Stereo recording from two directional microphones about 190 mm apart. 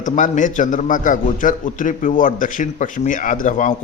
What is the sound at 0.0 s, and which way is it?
A man's voice, 40° left (ahead or behind).